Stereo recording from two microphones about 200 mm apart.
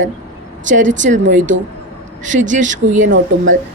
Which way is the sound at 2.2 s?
40° right (ahead or behind).